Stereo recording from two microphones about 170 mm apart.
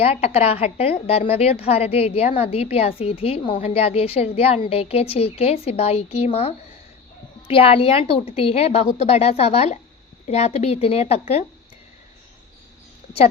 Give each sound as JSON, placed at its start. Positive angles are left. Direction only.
{"t": 0.0, "sound": "a woman's voice", "side_deg": 35}